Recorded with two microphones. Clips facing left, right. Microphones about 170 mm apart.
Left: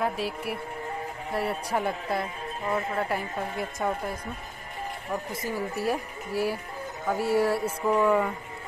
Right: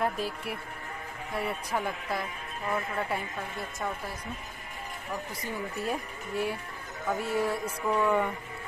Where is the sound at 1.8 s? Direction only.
30° left (ahead or behind).